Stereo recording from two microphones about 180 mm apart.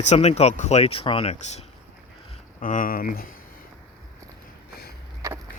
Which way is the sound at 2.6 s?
45° left (ahead or behind).